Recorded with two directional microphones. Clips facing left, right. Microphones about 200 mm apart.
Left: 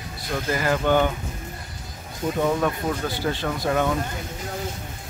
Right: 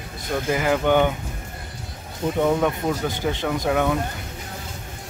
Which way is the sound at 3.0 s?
20° right (ahead or behind).